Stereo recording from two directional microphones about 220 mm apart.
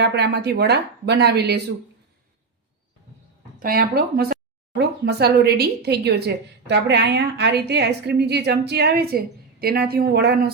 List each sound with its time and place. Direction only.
0.0 s speech: 50° right (ahead or behind)
3.6 s speech: 40° right (ahead or behind)